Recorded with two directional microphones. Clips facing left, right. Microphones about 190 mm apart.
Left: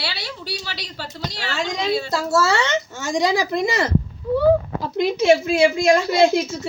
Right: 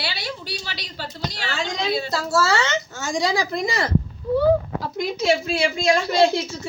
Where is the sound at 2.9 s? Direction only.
20° left (ahead or behind).